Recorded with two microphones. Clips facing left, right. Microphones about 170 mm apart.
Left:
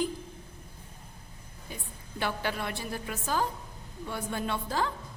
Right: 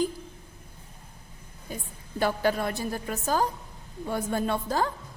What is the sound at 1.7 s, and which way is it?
A woman's voice, 40° right (ahead or behind).